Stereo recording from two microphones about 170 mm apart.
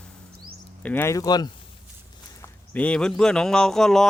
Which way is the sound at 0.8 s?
15° left (ahead or behind).